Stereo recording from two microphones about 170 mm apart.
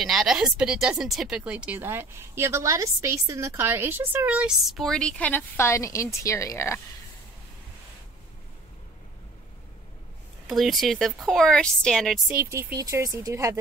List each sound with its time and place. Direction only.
0.0 s speech: centre (ahead or behind); by 6.8 s 15° left (ahead or behind)
10.4 s speech: centre (ahead or behind)
12.3 s speech: 15° right (ahead or behind)